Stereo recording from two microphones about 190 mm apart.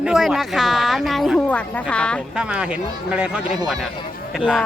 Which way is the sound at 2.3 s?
5° right (ahead or behind).